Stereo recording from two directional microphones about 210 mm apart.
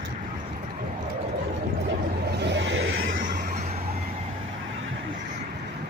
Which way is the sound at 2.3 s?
55° right (ahead or behind).